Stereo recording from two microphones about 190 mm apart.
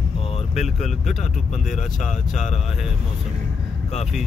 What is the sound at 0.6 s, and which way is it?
Speech, 35° left (ahead or behind).